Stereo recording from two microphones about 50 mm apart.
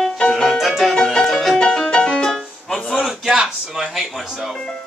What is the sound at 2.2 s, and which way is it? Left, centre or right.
Music, centre.